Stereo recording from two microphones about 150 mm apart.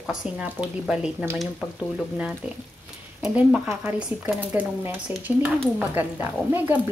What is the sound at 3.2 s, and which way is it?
Speech, 5° right (ahead or behind).